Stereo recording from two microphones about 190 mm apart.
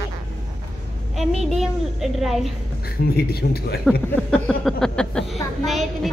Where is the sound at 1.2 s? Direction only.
Centre (ahead or behind).